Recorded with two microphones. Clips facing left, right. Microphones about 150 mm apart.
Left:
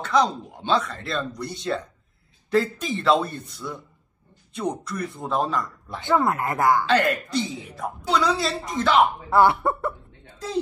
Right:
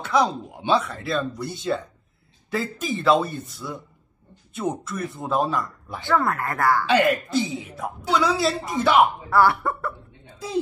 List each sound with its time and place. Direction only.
0.0 s speech: 10° right (ahead or behind)
5.9 s speech: 20° left (ahead or behind)
6.9 s speech: 5° right (ahead or behind)
9.3 s speech: 20° left (ahead or behind)
10.2 s a sound: 10° right (ahead or behind)